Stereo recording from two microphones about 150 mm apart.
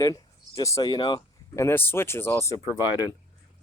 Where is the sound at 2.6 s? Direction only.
15° right (ahead or behind).